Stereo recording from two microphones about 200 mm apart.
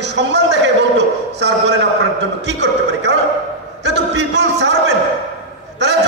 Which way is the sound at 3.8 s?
60° right (ahead or behind).